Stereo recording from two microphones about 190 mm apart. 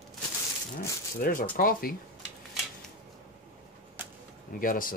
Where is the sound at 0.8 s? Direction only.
50° left (ahead or behind).